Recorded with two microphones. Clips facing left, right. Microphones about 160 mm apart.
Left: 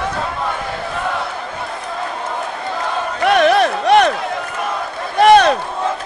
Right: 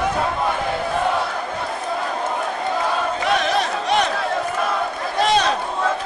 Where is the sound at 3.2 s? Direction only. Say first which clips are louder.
Left 10 dB; 65° left (ahead or behind).